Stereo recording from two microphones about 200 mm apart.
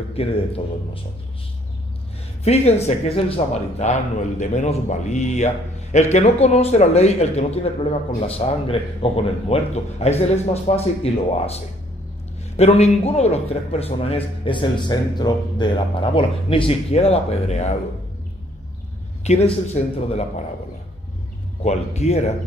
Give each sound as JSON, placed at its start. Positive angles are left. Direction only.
{"t": 0.2, "sound": "speech", "side_deg": 30}
{"t": 2.4, "sound": "speech", "side_deg": 30}
{"t": 12.5, "sound": "speech", "side_deg": 30}
{"t": 19.2, "sound": "speech", "side_deg": 30}
{"t": 21.6, "sound": "speech", "side_deg": 35}